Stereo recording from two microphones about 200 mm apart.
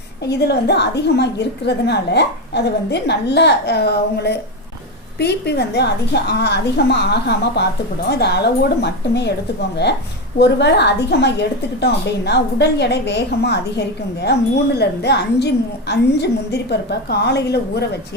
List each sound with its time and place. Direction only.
0.3 s a woman's voice: 55° left (ahead or behind)
10.3 s a woman's voice: 55° left (ahead or behind)